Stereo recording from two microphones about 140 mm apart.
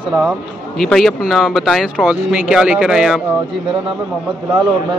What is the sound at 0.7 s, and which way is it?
Speech, centre (ahead or behind).